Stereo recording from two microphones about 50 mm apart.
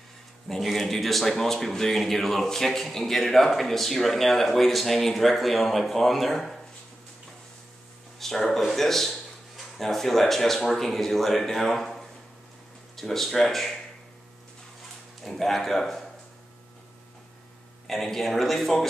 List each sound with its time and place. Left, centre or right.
0.5 s speech: centre
8.2 s speech: centre
15.2 s speech: centre
17.8 s speech: centre